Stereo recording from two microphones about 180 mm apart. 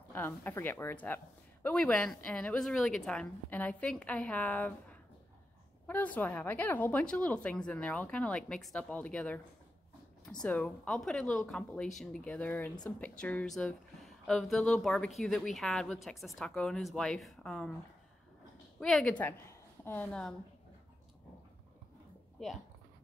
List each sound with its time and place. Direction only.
0.1 s speech: 10° left (ahead or behind)
10.4 s speech: 5° left (ahead or behind)
18.8 s a woman's voice: 5° left (ahead or behind)